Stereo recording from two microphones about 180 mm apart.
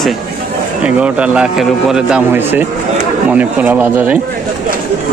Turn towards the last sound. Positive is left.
turn(degrees=-10)  # may be behind; listen again after turning